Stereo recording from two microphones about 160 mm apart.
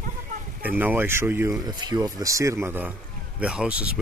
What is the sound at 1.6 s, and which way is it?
Speech, 25° right (ahead or behind).